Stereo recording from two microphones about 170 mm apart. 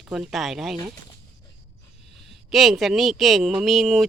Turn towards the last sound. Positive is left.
turn(degrees=0)  # may be behind; listen again after turning